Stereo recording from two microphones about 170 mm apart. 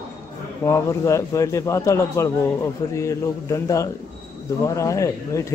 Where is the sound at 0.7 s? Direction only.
15° left (ahead or behind).